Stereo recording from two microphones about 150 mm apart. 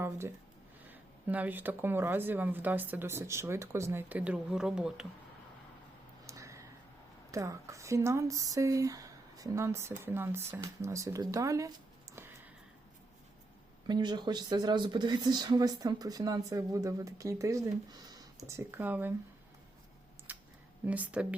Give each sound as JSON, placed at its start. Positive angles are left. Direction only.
{"t": 0.0, "sound": "speech", "side_deg": -15}
{"t": 6.2, "sound": "a sound", "side_deg": -20}
{"t": 7.3, "sound": "speech", "side_deg": -20}
{"t": 13.8, "sound": "speech", "side_deg": -30}
{"t": 20.3, "sound": "a sound", "side_deg": -15}
{"t": 20.8, "sound": "speech", "side_deg": -10}